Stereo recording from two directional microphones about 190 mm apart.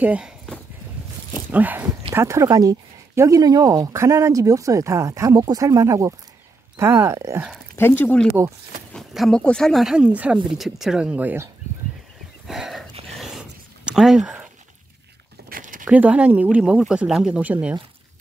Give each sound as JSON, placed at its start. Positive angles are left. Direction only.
{"t": 0.0, "sound": "speech", "side_deg": -5}
{"t": 1.5, "sound": "speech", "side_deg": -10}
{"t": 7.7, "sound": "speech", "side_deg": 10}
{"t": 12.4, "sound": "dog", "side_deg": 0}
{"t": 13.2, "sound": "a sound", "side_deg": -5}
{"t": 15.5, "sound": "a sound", "side_deg": -45}
{"t": 15.8, "sound": "speech", "side_deg": -5}